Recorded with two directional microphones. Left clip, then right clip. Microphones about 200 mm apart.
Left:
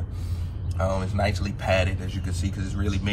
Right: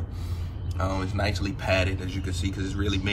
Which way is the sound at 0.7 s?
20° right (ahead or behind).